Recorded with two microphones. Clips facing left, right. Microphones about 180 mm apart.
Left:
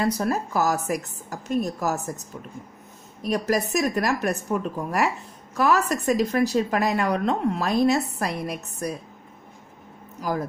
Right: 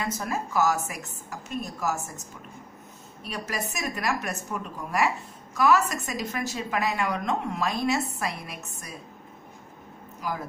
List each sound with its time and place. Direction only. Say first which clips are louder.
0.0 s a woman's voice: left 7 dB; 35° left (ahead or behind)